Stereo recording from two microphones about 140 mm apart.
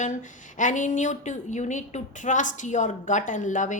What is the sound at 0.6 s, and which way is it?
A woman's voice, 65° left (ahead or behind).